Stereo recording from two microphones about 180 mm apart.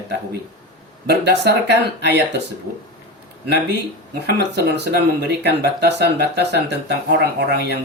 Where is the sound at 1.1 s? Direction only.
65° right (ahead or behind).